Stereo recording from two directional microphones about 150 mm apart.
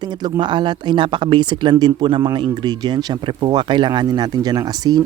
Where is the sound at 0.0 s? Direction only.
30° right (ahead or behind).